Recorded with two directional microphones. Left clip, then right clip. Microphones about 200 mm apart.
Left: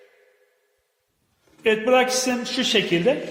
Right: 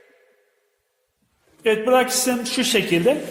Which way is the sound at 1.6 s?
10° right (ahead or behind).